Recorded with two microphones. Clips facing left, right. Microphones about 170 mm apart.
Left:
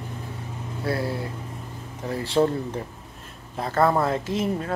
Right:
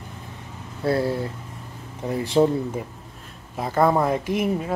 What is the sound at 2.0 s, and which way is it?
Speech, 20° right (ahead or behind).